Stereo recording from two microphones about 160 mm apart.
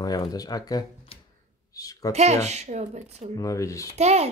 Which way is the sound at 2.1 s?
45° right (ahead or behind).